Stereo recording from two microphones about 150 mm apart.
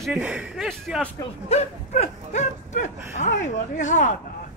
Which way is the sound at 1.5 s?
45° left (ahead or behind).